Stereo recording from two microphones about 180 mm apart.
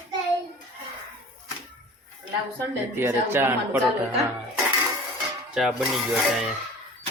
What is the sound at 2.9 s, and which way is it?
Speech, 15° right (ahead or behind).